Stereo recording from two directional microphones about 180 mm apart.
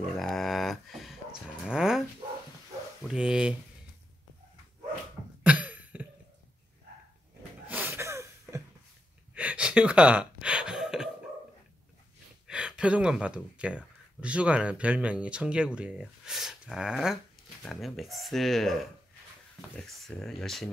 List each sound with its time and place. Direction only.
0.1 s a sound: centre (ahead or behind)
3.0 s speech: 5° right (ahead or behind)
5.4 s cough: 5° right (ahead or behind)
7.6 s a sound: 10° right (ahead or behind)
9.3 s gasp: 5° right (ahead or behind)
12.4 s speech: 5° right (ahead or behind)